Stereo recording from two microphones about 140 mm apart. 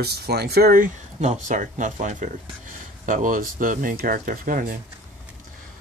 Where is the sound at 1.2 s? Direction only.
60° right (ahead or behind); by 4.7 s 80° right.